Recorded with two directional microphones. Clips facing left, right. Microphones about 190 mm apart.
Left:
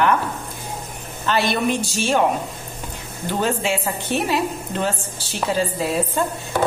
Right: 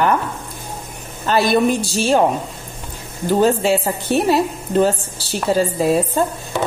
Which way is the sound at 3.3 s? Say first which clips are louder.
Right 7 dB; 35° right (ahead or behind).